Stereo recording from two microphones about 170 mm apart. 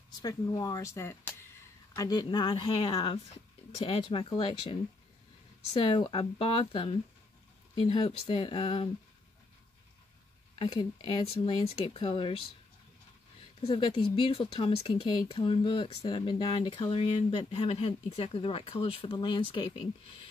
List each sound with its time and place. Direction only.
0.2 s speech: 20° left (ahead or behind)
10.6 s speech: 25° left (ahead or behind)
13.6 s speech: 35° left (ahead or behind)